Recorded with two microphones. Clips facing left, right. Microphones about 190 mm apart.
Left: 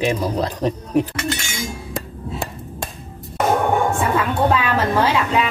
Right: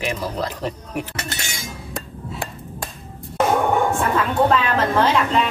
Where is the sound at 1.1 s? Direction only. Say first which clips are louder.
Left 6 dB; 35° right (ahead or behind).